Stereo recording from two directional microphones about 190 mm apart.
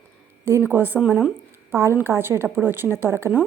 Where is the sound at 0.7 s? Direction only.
10° right (ahead or behind).